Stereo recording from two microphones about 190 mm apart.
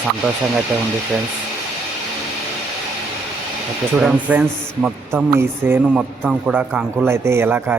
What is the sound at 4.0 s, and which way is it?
Speech, 5° right (ahead or behind).